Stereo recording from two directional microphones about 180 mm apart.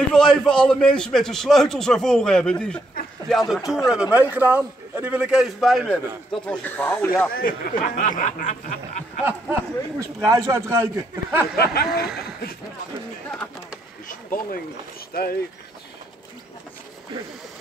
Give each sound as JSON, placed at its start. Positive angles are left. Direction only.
{"t": 0.1, "sound": "a man's voice", "side_deg": 5}
{"t": 7.3, "sound": "speech", "side_deg": 50}
{"t": 9.2, "sound": "speech", "side_deg": -15}
{"t": 11.5, "sound": "speech", "side_deg": 60}
{"t": 13.3, "sound": "speech", "side_deg": 5}
{"t": 14.0, "sound": "speech", "side_deg": 50}